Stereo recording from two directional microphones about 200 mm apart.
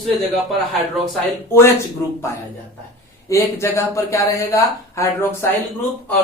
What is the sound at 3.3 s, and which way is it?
Speech, 15° left (ahead or behind).